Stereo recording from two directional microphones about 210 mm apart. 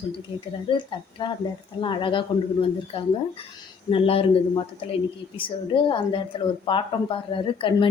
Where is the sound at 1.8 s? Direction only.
25° left (ahead or behind).